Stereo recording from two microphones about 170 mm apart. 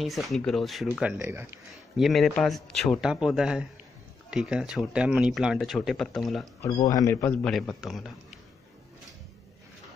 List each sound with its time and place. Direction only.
0.0 s speech: centre (ahead or behind)
1.7 s speech: centre (ahead or behind)
6.9 s a man's voice: 20° left (ahead or behind)
7.4 s speech: centre (ahead or behind)